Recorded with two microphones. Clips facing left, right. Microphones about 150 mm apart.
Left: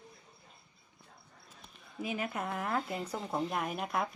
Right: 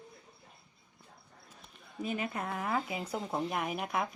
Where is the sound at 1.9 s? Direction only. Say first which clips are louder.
Right 1 dB; 5° left (ahead or behind).